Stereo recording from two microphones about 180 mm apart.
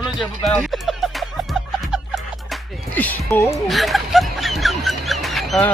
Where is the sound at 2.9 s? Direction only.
10° left (ahead or behind).